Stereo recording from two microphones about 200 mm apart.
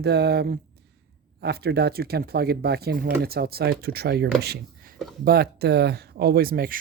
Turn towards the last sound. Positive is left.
turn(degrees=-45)  # may be behind; listen again after turning